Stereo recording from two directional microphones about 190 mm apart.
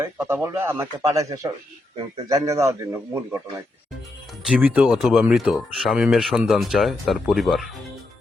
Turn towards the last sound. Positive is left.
turn(degrees=0)  # may be behind; listen again after turning